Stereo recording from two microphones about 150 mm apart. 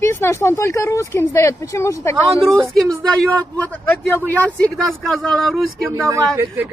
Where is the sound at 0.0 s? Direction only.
20° left (ahead or behind).